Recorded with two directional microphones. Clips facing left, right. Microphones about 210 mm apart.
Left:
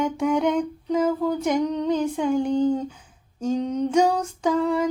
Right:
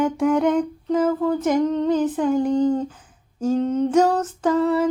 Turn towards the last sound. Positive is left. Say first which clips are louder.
# right 3 dB
turn(degrees=-5)  # may be behind; listen again after turning